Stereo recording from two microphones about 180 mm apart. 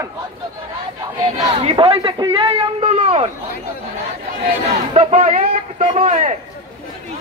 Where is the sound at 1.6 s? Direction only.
30° right (ahead or behind).